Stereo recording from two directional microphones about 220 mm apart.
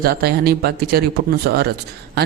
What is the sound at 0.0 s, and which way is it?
A man's voice, 45° right (ahead or behind).